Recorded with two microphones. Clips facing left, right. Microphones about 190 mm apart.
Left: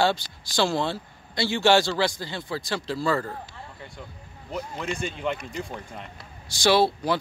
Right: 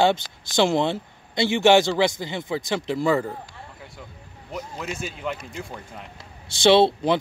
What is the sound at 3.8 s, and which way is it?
Speech, 5° right (ahead or behind).